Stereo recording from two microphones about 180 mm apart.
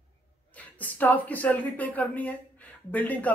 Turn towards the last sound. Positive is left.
turn(degrees=10)  # may be behind; listen again after turning